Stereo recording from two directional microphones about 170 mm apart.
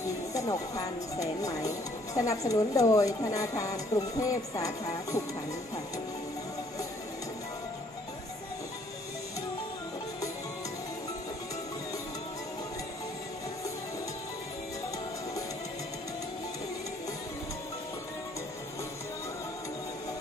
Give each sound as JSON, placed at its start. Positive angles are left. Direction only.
{"t": 0.3, "sound": "speech", "side_deg": 20}